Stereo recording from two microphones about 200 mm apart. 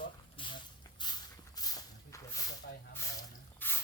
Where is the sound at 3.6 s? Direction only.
10° left (ahead or behind).